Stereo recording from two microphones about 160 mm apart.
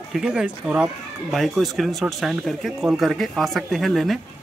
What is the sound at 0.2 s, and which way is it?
Speech, 5° right (ahead or behind).